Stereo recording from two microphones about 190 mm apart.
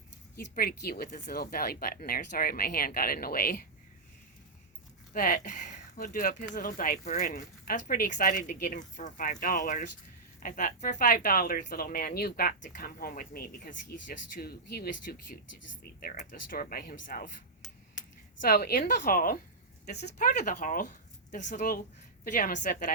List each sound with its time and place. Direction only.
0.3 s speech: 50° left (ahead or behind)
5.1 s speech: 45° left (ahead or behind)
18.4 s speech: 55° left (ahead or behind)